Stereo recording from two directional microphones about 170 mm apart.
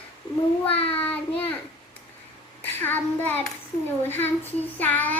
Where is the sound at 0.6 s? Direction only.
35° left (ahead or behind).